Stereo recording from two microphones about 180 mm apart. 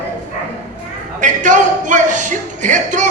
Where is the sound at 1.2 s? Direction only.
45° right (ahead or behind).